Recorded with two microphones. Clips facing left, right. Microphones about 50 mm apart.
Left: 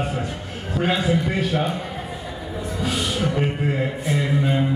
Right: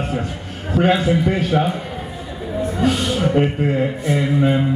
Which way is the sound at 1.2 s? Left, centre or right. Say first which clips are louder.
Right 5 dB; centre.